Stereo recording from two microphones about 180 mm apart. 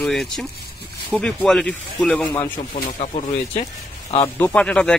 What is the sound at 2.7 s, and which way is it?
Speech, 30° left (ahead or behind).